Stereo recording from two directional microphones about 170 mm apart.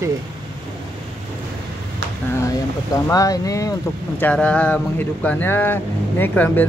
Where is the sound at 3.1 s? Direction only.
20° left (ahead or behind).